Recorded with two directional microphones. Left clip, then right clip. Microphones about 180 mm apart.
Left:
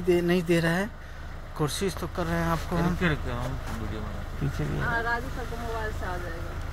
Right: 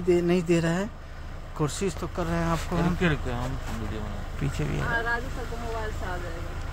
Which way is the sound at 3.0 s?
25° right (ahead or behind).